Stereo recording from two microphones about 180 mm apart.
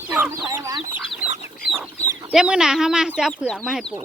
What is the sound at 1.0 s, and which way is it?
Chicken, centre (ahead or behind).